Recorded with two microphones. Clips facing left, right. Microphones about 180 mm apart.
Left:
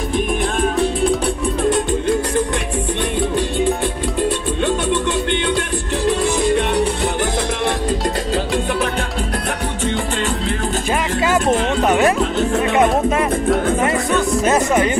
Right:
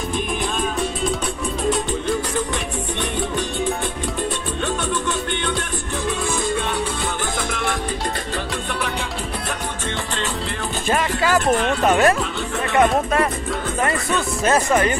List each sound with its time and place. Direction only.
6.0 s music: 75° left (ahead or behind)
11.8 s music: 15° left (ahead or behind)
14.5 s speech: 15° left (ahead or behind)